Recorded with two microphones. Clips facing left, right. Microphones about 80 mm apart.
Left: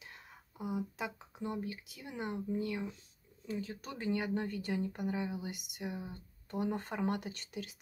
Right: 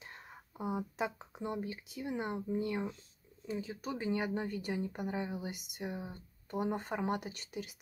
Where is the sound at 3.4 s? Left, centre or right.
Centre.